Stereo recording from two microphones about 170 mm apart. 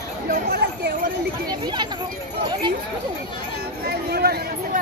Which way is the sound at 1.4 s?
25° right (ahead or behind).